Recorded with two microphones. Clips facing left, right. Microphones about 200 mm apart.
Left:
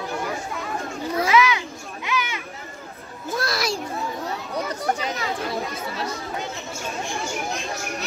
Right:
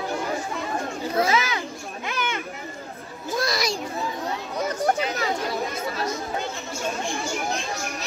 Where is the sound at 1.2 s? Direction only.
40° right (ahead or behind).